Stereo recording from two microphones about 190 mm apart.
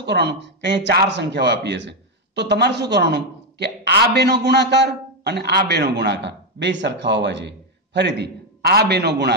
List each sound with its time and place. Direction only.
0.0 s speech: 65° right (ahead or behind)